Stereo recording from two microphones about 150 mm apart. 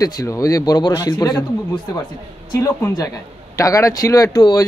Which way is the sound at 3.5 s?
20° left (ahead or behind).